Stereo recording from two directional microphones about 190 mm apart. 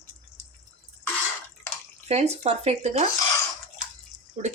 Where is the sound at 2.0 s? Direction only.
35° right (ahead or behind).